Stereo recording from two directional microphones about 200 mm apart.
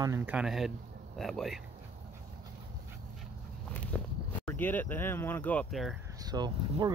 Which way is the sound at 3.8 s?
5° left (ahead or behind).